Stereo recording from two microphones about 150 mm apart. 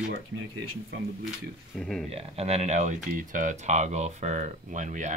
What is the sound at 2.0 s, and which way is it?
Speech, 40° right (ahead or behind).